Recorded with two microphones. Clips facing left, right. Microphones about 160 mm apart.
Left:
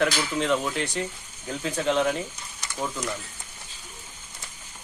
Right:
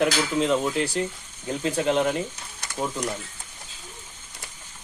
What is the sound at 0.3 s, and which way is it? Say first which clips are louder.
A man's voice: right 2 dB; 5° right (ahead or behind).